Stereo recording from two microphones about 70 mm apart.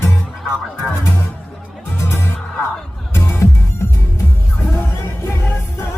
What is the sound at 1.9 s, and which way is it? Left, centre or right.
Music, left.